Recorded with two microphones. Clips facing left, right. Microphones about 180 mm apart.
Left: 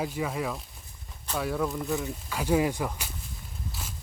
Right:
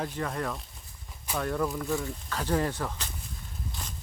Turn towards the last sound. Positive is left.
turn(degrees=5)  # may be behind; listen again after turning